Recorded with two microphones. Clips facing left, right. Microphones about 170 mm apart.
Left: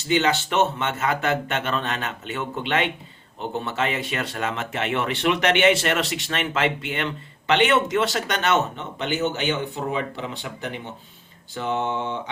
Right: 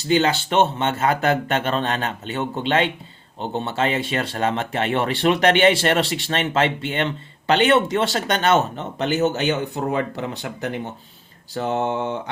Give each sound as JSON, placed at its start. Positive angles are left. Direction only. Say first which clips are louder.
{"t": 0.1, "sound": "speech", "louder": "right 3 dB", "side_deg": -35}
{"t": 11.5, "sound": "speech", "louder": "right 3 dB", "side_deg": -40}